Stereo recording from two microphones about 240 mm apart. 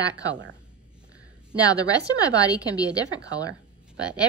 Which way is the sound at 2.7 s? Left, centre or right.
Centre.